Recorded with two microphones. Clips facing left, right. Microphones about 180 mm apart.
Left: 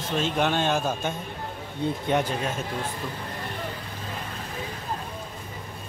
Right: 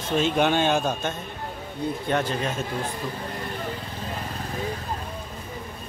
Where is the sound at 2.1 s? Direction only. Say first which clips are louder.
Even; 15° left (ahead or behind).